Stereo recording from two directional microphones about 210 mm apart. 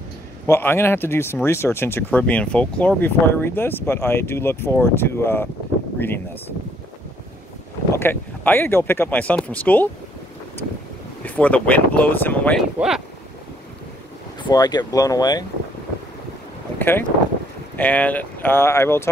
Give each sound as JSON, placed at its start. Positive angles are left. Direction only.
{"t": 0.5, "sound": "speech", "side_deg": 10}
{"t": 8.0, "sound": "speech", "side_deg": 10}
{"t": 11.2, "sound": "speech", "side_deg": 5}
{"t": 12.7, "sound": "speech", "side_deg": 0}
{"t": 14.4, "sound": "speech", "side_deg": 20}
{"t": 16.7, "sound": "boat", "side_deg": 10}
{"t": 17.7, "sound": "speech", "side_deg": 5}